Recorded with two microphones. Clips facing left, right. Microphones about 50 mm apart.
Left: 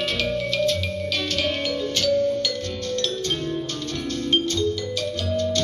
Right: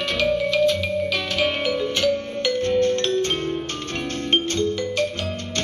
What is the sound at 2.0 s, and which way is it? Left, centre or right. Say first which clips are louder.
Music: left 1 dB; centre.